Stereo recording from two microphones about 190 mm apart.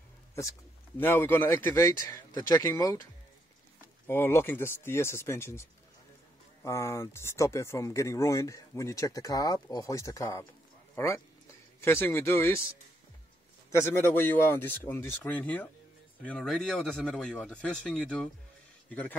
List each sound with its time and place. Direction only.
0.9 s speech: 10° left (ahead or behind)
4.1 s speech: 10° left (ahead or behind)
11.8 s speech: 15° left (ahead or behind)
13.8 s a man's voice: 10° left (ahead or behind)